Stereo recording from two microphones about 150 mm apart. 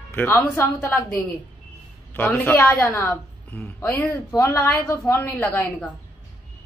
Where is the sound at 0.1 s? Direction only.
10° left (ahead or behind).